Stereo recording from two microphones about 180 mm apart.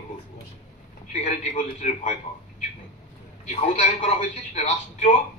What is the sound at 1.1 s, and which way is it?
Speech, 40° left (ahead or behind).